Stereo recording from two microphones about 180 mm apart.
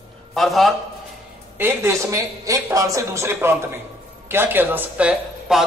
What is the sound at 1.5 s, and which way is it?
Speech, 10° right (ahead or behind).